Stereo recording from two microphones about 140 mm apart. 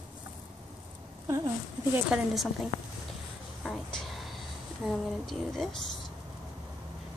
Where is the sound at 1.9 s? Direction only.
5° right (ahead or behind).